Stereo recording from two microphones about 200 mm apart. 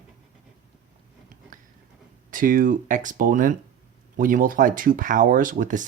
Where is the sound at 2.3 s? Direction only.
45° right (ahead or behind).